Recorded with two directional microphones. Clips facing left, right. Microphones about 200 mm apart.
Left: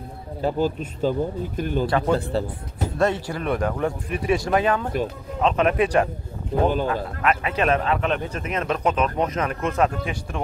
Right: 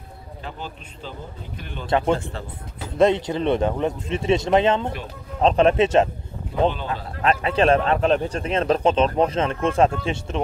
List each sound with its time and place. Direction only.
0.4 s speech: 40° left (ahead or behind)
1.9 s speech: 20° right (ahead or behind)
2.1 s speech: 35° left (ahead or behind)
3.0 s speech: 20° right (ahead or behind)
7.2 s speech: 30° right (ahead or behind)